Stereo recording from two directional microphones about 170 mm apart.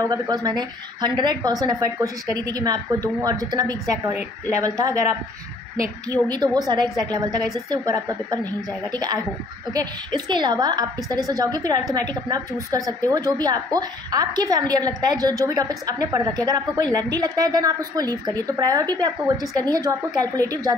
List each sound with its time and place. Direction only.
0.0 s a woman's voice: 20° right (ahead or behind)
6.2 s a woman's voice: 25° right (ahead or behind)